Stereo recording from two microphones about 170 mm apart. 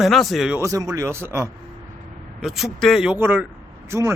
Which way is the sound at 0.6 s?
20° right (ahead or behind).